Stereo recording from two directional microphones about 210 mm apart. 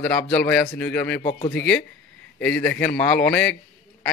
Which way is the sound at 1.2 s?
30° left (ahead or behind).